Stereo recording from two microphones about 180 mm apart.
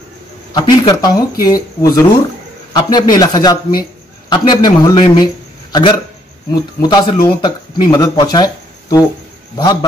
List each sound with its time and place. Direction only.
0.5 s a man's voice: 20° left (ahead or behind)
9.6 s speech: 25° left (ahead or behind)